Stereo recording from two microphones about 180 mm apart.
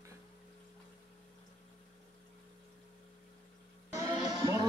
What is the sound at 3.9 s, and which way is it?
Music, 25° right (ahead or behind).